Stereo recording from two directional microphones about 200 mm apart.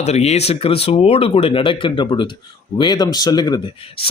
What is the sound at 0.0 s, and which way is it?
Speech, 35° left (ahead or behind).